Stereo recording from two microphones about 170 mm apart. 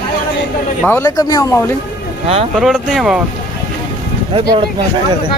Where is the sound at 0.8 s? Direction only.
10° left (ahead or behind).